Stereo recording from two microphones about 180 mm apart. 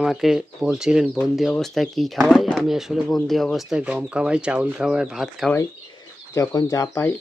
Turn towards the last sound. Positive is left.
turn(degrees=15)  # may be behind; listen again after turning